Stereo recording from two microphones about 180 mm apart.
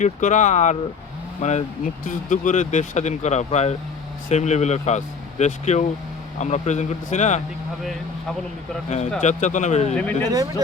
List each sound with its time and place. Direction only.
0.0 s speech: 45° left (ahead or behind)
9.2 s speech: 40° left (ahead or behind)
9.9 s speech: 5° left (ahead or behind)
10.2 s speech: 20° right (ahead or behind)